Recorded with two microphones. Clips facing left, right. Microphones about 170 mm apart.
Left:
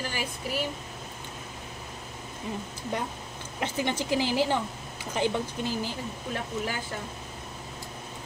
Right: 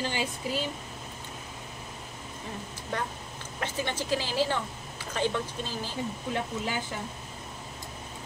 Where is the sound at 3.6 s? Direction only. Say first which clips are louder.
Left 3 dB; 15° left (ahead or behind).